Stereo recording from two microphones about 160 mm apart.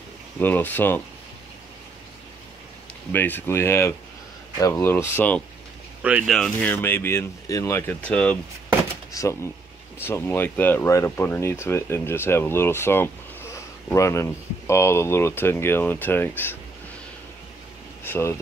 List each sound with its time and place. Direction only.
0.4 s speech: 10° left (ahead or behind)
3.1 s speech: 10° left (ahead or behind)
6.0 s speech: 10° right (ahead or behind)
6.3 s speech: 5° left (ahead or behind)
9.1 s speech: 20° left (ahead or behind)
18.0 s speech: 15° left (ahead or behind)